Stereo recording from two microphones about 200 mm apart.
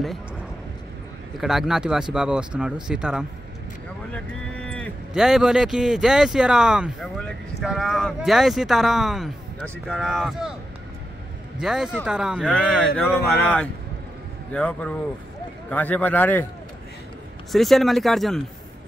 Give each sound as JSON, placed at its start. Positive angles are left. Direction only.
{"t": 1.4, "sound": "speech", "side_deg": 0}
{"t": 11.6, "sound": "a man's voice", "side_deg": -5}
{"t": 17.5, "sound": "speech", "side_deg": 0}